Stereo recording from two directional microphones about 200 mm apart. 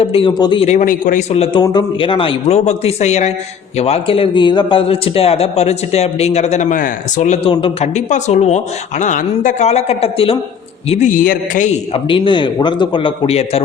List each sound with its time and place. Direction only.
0.0 s a man's voice: 30° left (ahead or behind)
12.0 s a man's voice: 25° left (ahead or behind)